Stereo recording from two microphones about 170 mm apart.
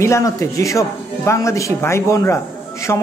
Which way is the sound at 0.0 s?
15° left (ahead or behind).